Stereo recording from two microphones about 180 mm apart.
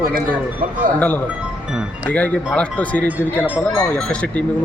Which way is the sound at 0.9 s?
10° left (ahead or behind).